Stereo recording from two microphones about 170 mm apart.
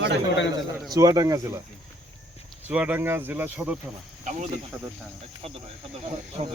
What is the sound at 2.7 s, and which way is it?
Speech, 10° right (ahead or behind).